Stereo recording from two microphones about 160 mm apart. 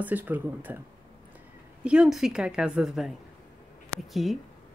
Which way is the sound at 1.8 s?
5° right (ahead or behind).